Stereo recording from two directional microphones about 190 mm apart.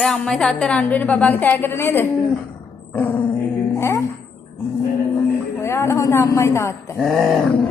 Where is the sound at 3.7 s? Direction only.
15° left (ahead or behind).